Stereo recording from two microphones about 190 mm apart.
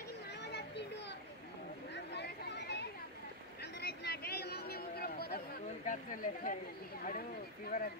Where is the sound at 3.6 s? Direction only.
60° left (ahead or behind); by 6.5 s 45° left (ahead or behind).